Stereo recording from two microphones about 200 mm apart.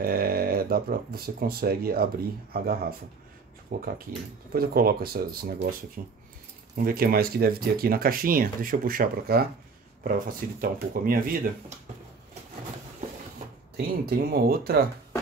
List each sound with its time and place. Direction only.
0.0 s speech: 50° right (ahead or behind)
13.7 s speech: 50° right (ahead or behind)